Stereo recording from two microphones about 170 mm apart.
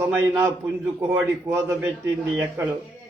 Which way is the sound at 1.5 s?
15° right (ahead or behind).